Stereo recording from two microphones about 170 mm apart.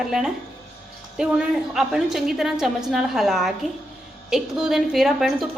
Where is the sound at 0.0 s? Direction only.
5° right (ahead or behind).